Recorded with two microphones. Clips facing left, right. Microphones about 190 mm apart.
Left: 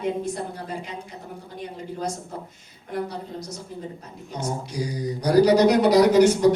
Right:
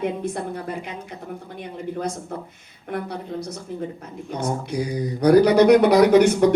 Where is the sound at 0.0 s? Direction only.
60° right (ahead or behind).